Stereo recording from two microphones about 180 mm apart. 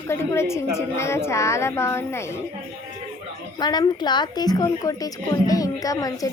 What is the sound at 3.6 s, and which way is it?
A woman's voice, 25° left (ahead or behind).